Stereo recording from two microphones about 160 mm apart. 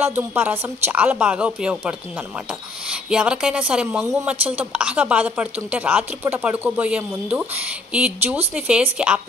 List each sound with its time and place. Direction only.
0.0 s speech: 15° right (ahead or behind)